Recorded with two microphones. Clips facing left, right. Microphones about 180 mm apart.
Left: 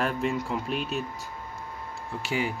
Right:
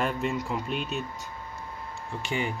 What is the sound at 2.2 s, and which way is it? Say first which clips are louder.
Speech: left 1 dB; 5° left (ahead or behind).